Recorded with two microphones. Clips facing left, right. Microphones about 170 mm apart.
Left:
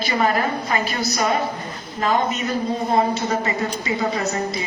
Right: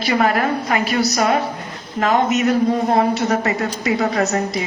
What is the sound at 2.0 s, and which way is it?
A woman's voice, 75° right (ahead or behind).